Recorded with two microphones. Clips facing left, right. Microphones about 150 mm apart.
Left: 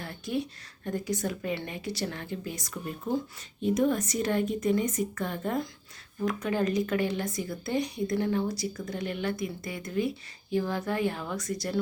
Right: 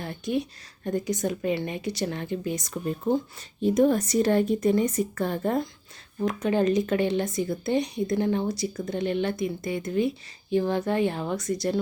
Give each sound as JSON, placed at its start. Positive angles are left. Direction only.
{"t": 0.0, "sound": "a woman's voice", "side_deg": -20}
{"t": 3.6, "sound": "speech", "side_deg": -35}
{"t": 6.2, "sound": "a woman's voice", "side_deg": -25}